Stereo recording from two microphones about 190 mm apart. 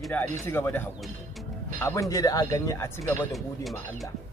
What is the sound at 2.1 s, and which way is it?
Speech, 20° left (ahead or behind).